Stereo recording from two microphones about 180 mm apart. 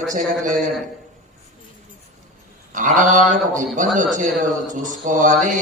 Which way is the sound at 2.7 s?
45° right (ahead or behind).